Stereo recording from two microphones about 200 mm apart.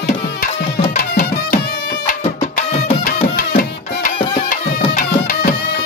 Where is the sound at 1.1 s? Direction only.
45° left (ahead or behind).